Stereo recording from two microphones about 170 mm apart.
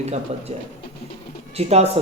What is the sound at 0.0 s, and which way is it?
Speech, 40° right (ahead or behind).